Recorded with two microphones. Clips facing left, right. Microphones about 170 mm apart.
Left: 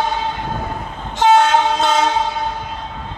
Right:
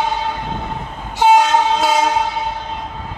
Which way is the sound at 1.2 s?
10° right (ahead or behind).